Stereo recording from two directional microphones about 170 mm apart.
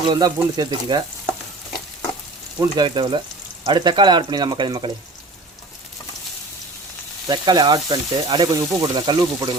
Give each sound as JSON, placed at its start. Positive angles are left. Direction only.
{"t": 0.1, "sound": "speech", "side_deg": -20}
{"t": 2.6, "sound": "speech", "side_deg": -25}
{"t": 7.3, "sound": "speech", "side_deg": -25}